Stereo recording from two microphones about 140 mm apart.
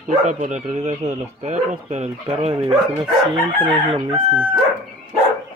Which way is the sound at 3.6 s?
35° right (ahead or behind).